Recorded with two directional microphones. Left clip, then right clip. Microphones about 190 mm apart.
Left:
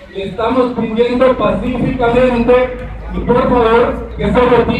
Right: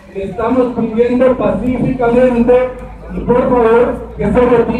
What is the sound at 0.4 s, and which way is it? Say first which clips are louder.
Speech: even; 50° right (ahead or behind).